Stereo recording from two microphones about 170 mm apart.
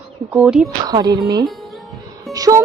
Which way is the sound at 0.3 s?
5° right (ahead or behind).